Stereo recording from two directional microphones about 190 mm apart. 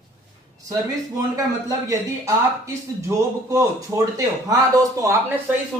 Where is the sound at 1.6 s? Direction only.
15° right (ahead or behind).